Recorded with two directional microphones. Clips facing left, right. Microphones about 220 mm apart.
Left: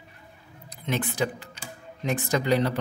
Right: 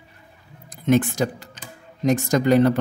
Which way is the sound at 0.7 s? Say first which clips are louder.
Right 11 dB; 45° right (ahead or behind).